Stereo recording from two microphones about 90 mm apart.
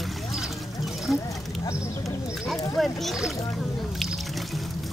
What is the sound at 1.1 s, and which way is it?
Speech, centre (ahead or behind).